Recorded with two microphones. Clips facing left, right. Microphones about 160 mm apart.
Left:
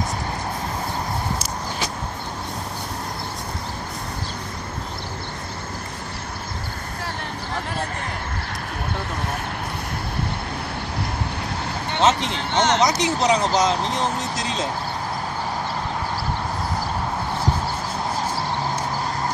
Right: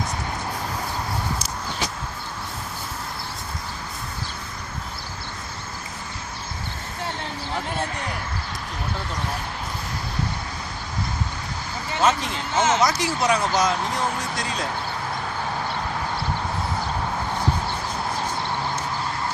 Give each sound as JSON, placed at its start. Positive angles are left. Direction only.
{"t": 12.0, "sound": "speech", "side_deg": 20}
{"t": 12.5, "sound": "speech", "side_deg": -5}
{"t": 12.8, "sound": "speech", "side_deg": 20}